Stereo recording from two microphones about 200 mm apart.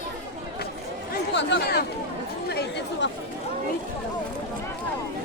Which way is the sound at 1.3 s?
60° left (ahead or behind).